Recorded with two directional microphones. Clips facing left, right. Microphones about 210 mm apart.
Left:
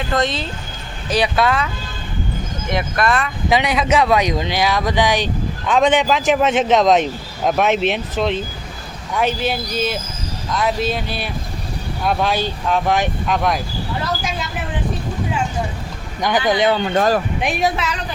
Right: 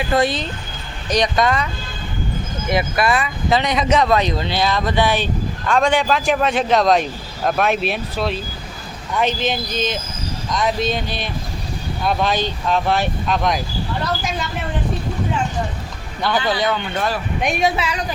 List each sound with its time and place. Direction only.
0.0 s speech: 5° right (ahead or behind)
1.1 s speech: 5° left (ahead or behind)
3.5 s speech: 10° left (ahead or behind)
9.1 s speech: 10° left (ahead or behind)
16.2 s speech: 15° left (ahead or behind)
16.7 s speech: 40° left (ahead or behind)
17.4 s speech: centre (ahead or behind)